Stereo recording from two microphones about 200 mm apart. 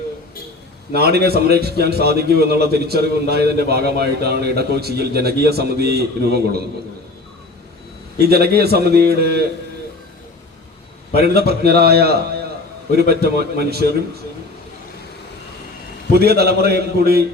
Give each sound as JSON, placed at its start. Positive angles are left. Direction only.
{"t": 0.9, "sound": "a man's voice", "side_deg": -50}
{"t": 8.2, "sound": "a man's voice", "side_deg": -50}
{"t": 11.1, "sound": "a man's voice", "side_deg": -50}
{"t": 16.1, "sound": "a man's voice", "side_deg": -50}